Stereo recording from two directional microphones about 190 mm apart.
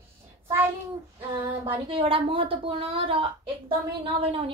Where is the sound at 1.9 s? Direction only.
30° right (ahead or behind).